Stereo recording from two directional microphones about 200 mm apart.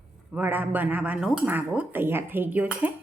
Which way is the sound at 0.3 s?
10° right (ahead or behind).